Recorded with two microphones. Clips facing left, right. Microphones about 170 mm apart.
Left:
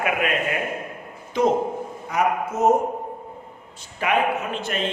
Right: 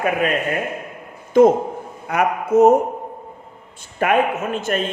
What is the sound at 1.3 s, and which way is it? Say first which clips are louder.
Speech: right 9 dB; 50° right (ahead or behind).